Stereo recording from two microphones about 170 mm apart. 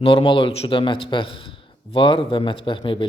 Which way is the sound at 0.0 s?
30° left (ahead or behind).